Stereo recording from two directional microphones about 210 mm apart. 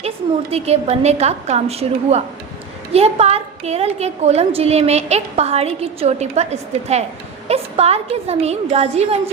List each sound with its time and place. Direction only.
0.5 s a woman's voice: 30° right (ahead or behind)